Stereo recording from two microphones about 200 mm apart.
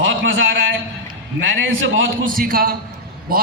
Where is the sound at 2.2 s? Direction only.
45° right (ahead or behind).